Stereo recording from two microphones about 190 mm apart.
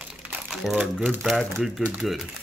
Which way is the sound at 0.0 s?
5° right (ahead or behind).